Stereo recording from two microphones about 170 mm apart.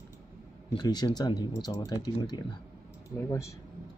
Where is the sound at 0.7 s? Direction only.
25° left (ahead or behind).